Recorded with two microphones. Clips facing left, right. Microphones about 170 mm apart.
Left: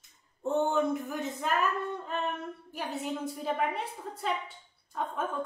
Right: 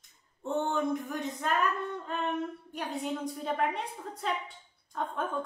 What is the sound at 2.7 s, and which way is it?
A woman's voice, 5° left (ahead or behind).